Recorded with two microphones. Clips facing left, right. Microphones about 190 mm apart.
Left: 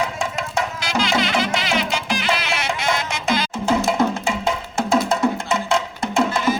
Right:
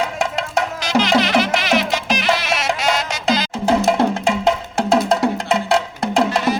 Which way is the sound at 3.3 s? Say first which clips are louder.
Right 2 dB; 35° right (ahead or behind).